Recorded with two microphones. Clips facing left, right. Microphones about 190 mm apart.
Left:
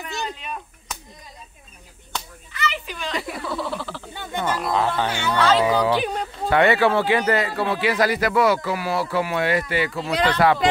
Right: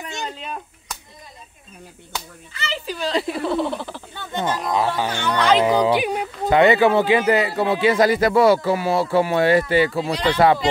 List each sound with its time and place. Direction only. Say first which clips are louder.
2.5 s speech: even; 30° right (ahead or behind)
4.1 s speech: even; 15° left (ahead or behind)
4.4 s speech: right 1 dB; 15° right (ahead or behind)